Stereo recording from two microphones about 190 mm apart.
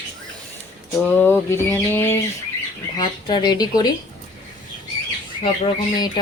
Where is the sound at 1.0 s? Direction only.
10° left (ahead or behind).